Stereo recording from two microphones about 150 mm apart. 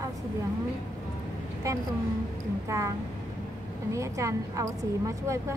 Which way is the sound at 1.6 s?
20° right (ahead or behind).